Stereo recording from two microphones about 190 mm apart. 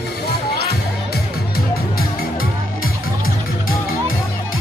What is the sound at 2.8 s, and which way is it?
Music, 90° left.